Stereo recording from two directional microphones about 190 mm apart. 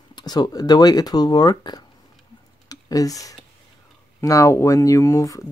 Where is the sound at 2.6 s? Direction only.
20° left (ahead or behind).